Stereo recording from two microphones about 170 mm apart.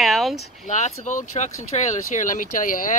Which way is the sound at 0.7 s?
45° left (ahead or behind).